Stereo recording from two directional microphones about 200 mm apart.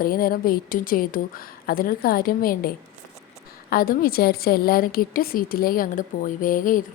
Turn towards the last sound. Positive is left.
turn(degrees=40)  # may be behind; listen again after turning